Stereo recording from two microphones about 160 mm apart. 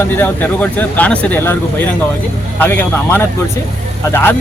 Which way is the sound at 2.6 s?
10° left (ahead or behind).